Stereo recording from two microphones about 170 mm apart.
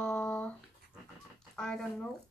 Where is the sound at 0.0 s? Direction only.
5° left (ahead or behind).